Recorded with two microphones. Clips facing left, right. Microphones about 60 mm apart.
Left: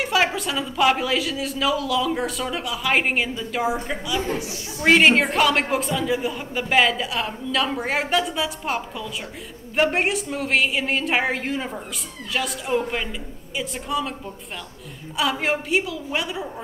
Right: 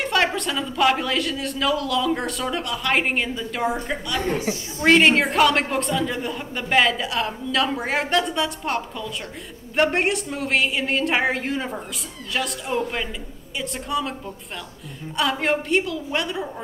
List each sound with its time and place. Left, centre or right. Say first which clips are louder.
0.0 s a man's voice: even; centre
4.4 s a woman's voice: right 4 dB; right
4.8 s a man's voice: even; centre
15.1 s a man's voice: right 1 dB; centre